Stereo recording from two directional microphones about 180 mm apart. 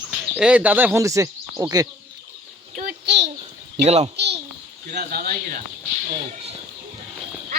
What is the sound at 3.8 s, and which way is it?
Speech, 35° right (ahead or behind).